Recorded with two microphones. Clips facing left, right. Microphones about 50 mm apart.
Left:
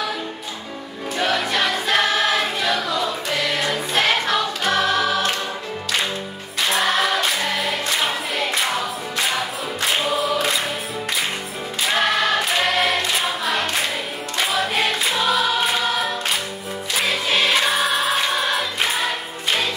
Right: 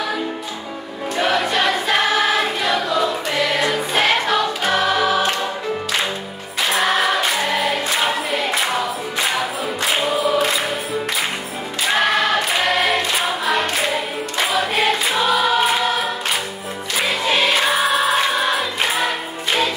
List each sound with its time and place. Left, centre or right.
1.1 s choir: centre
6.6 s music: centre
9.8 s choir: centre
11.9 s choir: centre
14.4 s music: centre
16.9 s music: centre